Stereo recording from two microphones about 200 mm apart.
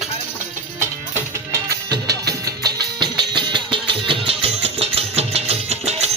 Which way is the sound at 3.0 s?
25° right (ahead or behind).